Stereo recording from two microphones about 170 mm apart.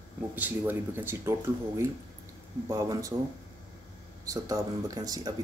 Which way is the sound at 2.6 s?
20° right (ahead or behind).